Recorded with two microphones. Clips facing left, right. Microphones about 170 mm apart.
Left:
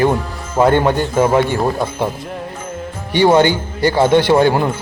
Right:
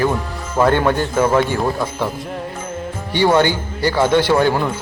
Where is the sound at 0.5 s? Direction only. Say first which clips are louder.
Left 2 dB; 15° left (ahead or behind).